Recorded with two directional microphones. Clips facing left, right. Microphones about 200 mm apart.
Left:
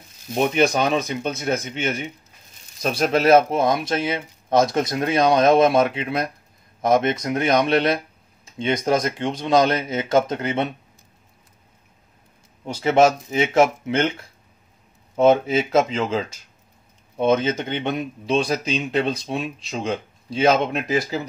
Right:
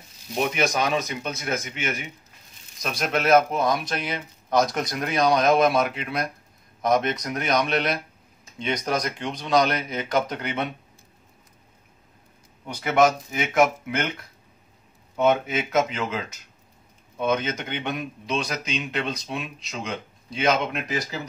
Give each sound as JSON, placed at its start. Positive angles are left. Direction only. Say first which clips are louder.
{"t": 0.4, "sound": "speech", "louder": "left 5 dB", "side_deg": 30}
{"t": 12.6, "sound": "speech", "louder": "left 4 dB", "side_deg": 25}
{"t": 15.1, "sound": "speech", "louder": "left 5 dB", "side_deg": 30}